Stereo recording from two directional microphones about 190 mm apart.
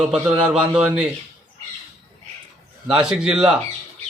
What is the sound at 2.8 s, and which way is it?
Speech, 5° right (ahead or behind).